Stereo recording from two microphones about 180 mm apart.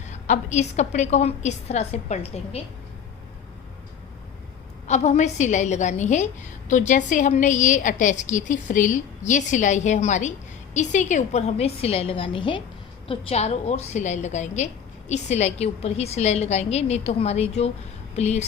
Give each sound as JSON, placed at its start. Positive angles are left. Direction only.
{"t": 0.1, "sound": "a woman's voice", "side_deg": 40}
{"t": 4.9, "sound": "a woman's voice", "side_deg": 40}